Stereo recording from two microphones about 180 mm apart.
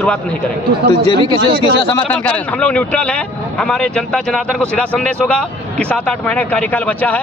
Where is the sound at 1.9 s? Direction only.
10° left (ahead or behind).